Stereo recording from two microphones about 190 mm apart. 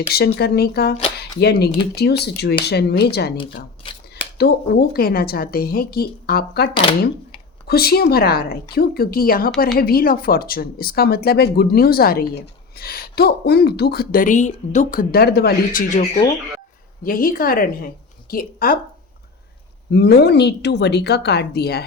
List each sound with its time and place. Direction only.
0.1 s a woman's voice: 55° left (ahead or behind)
7.7 s speech: 55° left (ahead or behind)
17.0 s a woman's voice: 50° left (ahead or behind)
19.9 s a woman's voice: 60° left (ahead or behind)